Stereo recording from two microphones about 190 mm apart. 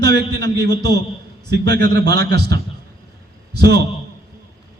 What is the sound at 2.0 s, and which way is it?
Speech, 20° left (ahead or behind).